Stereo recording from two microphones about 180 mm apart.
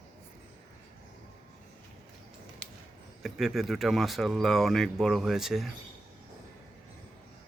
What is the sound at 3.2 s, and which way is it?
Speech, centre (ahead or behind).